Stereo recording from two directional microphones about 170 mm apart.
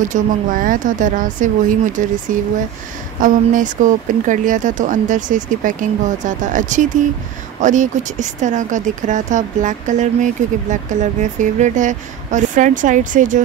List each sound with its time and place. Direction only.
0.0 s speech: 50° right (ahead or behind)